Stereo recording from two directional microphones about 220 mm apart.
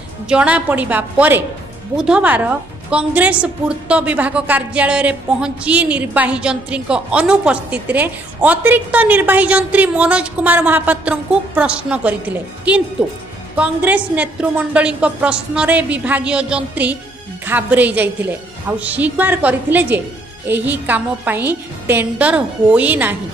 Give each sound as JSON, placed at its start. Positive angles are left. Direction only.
{"t": 0.3, "sound": "a woman's voice", "side_deg": -5}